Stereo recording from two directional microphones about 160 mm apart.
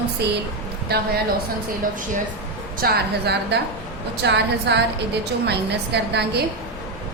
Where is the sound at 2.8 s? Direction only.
80° right.